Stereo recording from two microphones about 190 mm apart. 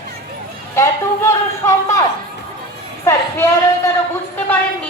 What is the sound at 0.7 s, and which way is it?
A woman's voice, 15° left (ahead or behind).